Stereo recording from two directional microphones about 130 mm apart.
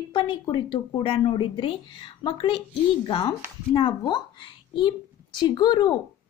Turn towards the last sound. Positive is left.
turn(degrees=30)  # may be behind; listen again after turning